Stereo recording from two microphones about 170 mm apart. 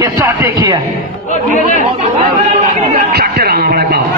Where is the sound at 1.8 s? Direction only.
35° right (ahead or behind).